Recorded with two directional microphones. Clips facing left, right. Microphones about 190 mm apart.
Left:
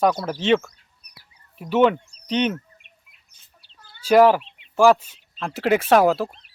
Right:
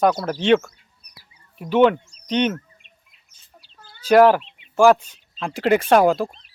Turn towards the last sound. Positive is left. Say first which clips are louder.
# right 1 dB
turn(degrees=5)  # may be behind; listen again after turning